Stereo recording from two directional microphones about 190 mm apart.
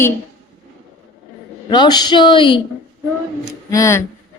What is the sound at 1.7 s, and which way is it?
Speech, 20° left (ahead or behind).